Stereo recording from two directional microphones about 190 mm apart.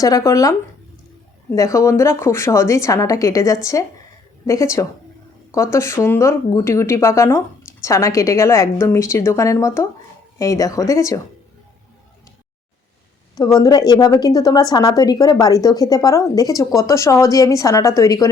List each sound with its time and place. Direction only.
0.0 s speech: 20° left (ahead or behind)
13.6 s speech: 20° left (ahead or behind)